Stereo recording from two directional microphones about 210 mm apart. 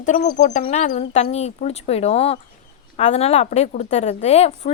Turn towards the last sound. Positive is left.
turn(degrees=30)  # may be behind; listen again after turning